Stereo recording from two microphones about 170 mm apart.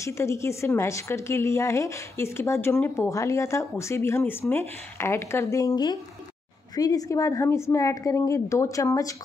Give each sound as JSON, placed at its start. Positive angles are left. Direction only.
{"t": 0.0, "sound": "a woman's voice", "side_deg": 15}